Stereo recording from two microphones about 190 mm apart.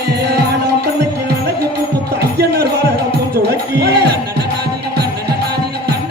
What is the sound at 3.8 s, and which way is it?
Music, 60° right (ahead or behind).